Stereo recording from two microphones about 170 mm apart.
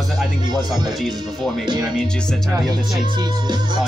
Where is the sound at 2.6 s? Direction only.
25° right (ahead or behind).